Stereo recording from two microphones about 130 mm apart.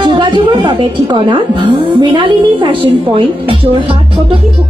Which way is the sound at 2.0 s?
40° right (ahead or behind).